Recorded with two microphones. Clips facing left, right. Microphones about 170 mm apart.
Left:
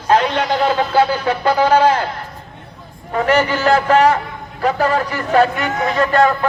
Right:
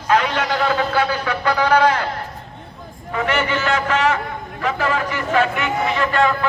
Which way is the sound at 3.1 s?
40° left (ahead or behind).